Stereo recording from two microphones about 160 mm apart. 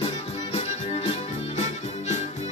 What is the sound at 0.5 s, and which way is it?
Music, 40° left (ahead or behind).